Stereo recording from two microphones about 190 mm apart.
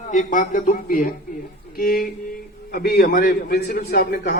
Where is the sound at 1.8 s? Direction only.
50° left (ahead or behind).